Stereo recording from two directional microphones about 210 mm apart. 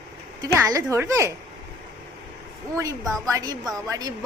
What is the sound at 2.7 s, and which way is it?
A woman's voice, 15° right (ahead or behind).